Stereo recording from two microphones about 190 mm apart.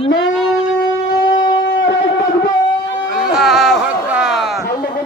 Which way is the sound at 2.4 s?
75° left (ahead or behind).